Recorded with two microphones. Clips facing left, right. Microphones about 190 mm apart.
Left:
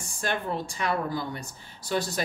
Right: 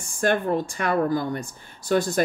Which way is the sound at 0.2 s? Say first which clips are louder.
Right 8 dB; 55° right (ahead or behind).